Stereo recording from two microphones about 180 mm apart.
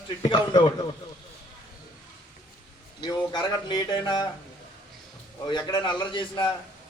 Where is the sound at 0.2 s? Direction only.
25° left (ahead or behind).